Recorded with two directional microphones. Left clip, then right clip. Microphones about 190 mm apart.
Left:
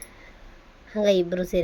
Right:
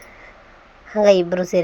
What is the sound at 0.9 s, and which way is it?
Speech, centre (ahead or behind).